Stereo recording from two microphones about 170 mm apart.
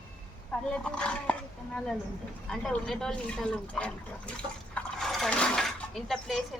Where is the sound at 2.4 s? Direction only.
Centre (ahead or behind).